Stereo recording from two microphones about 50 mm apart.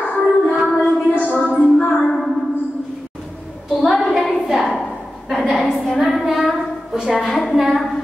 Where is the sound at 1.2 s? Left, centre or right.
Left.